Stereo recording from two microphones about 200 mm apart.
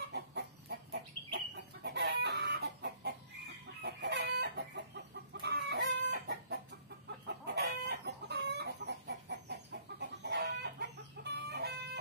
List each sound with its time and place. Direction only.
0.0 s chicken: 55° right (ahead or behind)